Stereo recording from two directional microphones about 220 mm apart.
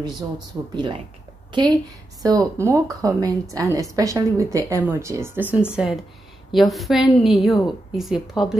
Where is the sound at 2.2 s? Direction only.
15° right (ahead or behind).